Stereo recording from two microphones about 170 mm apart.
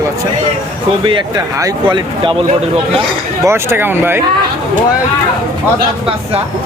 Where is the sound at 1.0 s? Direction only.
25° right (ahead or behind).